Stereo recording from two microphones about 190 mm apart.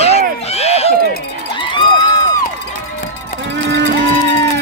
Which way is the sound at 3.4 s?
70° right (ahead or behind).